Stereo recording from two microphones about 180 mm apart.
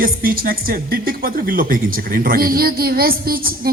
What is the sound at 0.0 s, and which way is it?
A woman's voice, 55° right (ahead or behind).